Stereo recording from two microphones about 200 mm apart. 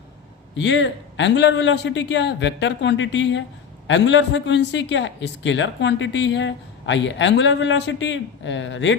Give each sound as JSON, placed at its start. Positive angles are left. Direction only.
{"t": 0.5, "sound": "a man's voice", "side_deg": 65}